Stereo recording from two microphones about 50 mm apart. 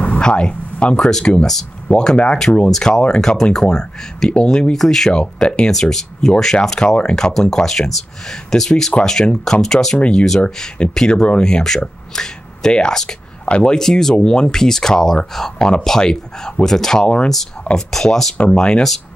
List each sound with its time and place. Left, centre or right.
0.2 s a sound: centre
1.0 s speech: centre
1.9 s speech: centre
3.2 s speech: centre
4.7 s speech: centre
5.2 s speech: centre
5.7 s speech: centre
13.7 s speech: centre